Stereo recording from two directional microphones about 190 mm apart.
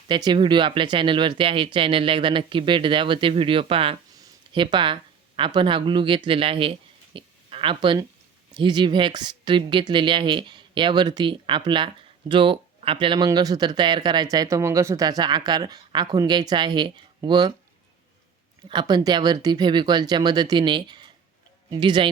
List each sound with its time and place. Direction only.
0.1 s a man's voice: 25° right (ahead or behind)
18.7 s speech: 25° right (ahead or behind)